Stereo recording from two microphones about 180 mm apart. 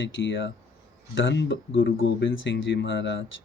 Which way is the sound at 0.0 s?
90° left.